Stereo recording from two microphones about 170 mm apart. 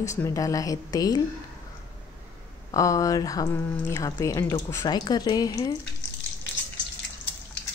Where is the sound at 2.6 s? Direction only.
20° left (ahead or behind).